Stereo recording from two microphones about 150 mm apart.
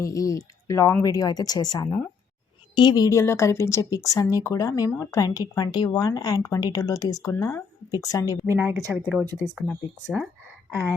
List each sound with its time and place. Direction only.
0.0 s speech: 20° left (ahead or behind)
8.4 s speech: 15° right (ahead or behind)